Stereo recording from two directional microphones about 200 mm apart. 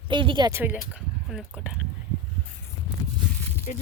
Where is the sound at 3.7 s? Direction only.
40° left (ahead or behind).